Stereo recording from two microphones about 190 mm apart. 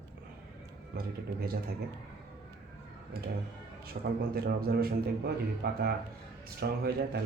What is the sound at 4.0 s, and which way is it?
Speech, 50° right (ahead or behind).